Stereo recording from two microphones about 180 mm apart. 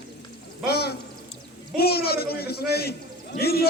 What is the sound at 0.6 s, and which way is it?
A man's voice, 60° left (ahead or behind).